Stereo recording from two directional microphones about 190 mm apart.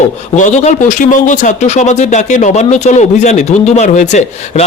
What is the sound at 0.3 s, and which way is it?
Speech, 40° left (ahead or behind).